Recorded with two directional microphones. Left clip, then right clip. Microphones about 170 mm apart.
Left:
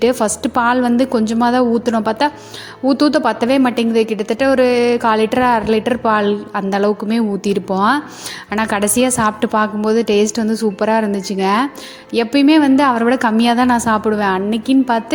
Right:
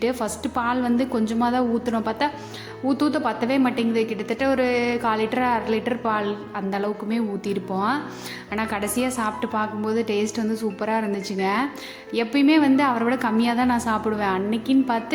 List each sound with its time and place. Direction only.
0.0 s speech: 40° left (ahead or behind)